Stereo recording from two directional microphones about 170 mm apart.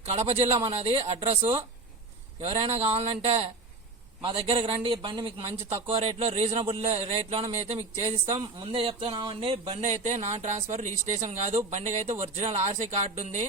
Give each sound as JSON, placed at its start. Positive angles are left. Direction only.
{"t": 0.0, "sound": "a man's voice", "side_deg": -40}
{"t": 2.4, "sound": "a man's voice", "side_deg": -35}